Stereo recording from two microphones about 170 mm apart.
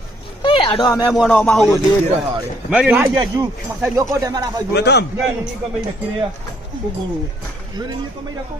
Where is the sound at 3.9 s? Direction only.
20° right (ahead or behind).